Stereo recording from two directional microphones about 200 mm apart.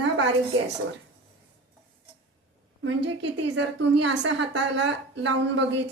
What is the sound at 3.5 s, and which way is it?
A woman's voice, 65° right (ahead or behind).